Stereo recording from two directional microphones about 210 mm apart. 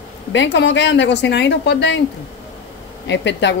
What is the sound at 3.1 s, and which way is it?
Speech, 60° left (ahead or behind).